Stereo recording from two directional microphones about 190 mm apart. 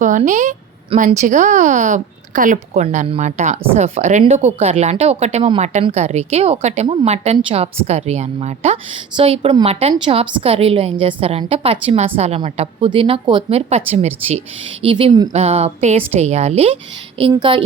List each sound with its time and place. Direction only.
0.0 s a woman's voice: 40° right (ahead or behind)